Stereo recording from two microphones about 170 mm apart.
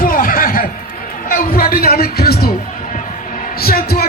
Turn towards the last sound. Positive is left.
turn(degrees=60)  # may be behind; listen again after turning